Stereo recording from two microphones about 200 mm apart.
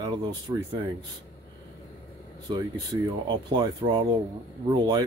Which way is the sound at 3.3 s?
20° right (ahead or behind).